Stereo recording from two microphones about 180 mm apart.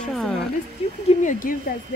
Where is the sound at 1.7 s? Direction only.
55° left (ahead or behind).